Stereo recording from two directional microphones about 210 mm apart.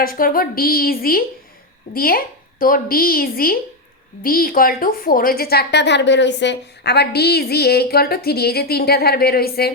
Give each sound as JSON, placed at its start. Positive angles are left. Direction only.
{"t": 0.0, "sound": "a woman's voice", "side_deg": 45}